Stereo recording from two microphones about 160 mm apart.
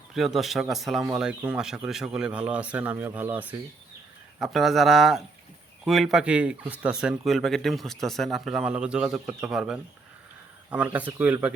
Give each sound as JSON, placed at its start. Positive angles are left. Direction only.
{"t": 0.1, "sound": "speech", "side_deg": 0}
{"t": 4.4, "sound": "speech", "side_deg": 0}